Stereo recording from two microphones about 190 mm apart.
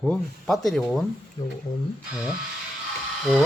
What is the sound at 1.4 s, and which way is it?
Speech, 20° left (ahead or behind).